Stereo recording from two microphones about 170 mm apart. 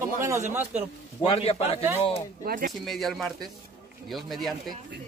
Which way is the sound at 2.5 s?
55° right (ahead or behind).